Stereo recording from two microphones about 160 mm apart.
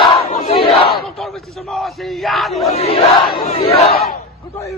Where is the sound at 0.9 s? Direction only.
Centre (ahead or behind).